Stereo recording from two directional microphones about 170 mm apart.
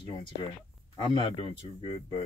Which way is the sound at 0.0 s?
25° left (ahead or behind).